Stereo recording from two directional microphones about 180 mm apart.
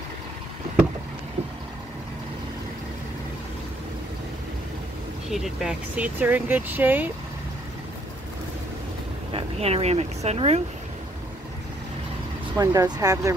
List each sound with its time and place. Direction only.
5.3 s speech: centre (ahead or behind)
9.3 s speech: 35° right (ahead or behind)
12.5 s speech: 20° right (ahead or behind)